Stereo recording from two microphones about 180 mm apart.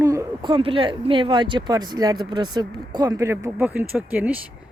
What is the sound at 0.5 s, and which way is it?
Speech, 30° right (ahead or behind).